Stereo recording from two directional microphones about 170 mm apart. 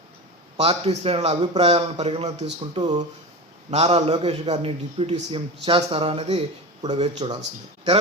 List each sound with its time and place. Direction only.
0.5 s a man's voice: 35° right (ahead or behind)